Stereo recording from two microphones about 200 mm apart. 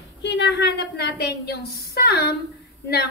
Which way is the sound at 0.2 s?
60° left (ahead or behind).